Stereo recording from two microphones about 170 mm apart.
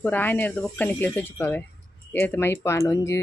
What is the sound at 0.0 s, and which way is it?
A woman's voice, 10° left (ahead or behind).